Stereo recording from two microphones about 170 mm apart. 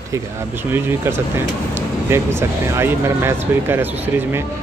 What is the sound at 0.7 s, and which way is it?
Speech, 15° right (ahead or behind).